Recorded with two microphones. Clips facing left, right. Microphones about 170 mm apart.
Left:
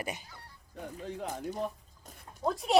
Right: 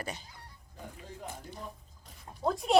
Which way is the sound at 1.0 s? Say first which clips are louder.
Left 7 dB; 75° left (ahead or behind).